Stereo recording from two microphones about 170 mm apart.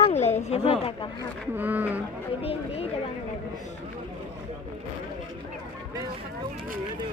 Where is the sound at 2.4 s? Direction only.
35° left (ahead or behind).